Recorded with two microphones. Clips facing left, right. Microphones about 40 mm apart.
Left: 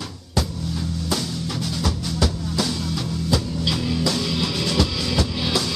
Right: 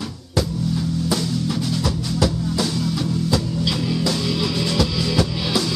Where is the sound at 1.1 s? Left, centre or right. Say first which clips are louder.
Right 4 dB; centre.